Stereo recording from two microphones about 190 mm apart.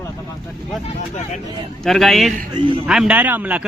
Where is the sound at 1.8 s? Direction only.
Centre (ahead or behind).